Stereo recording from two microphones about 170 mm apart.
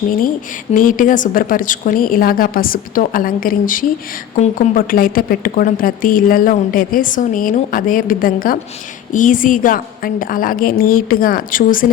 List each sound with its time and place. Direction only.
0.7 s a woman's voice: 50° left (ahead or behind)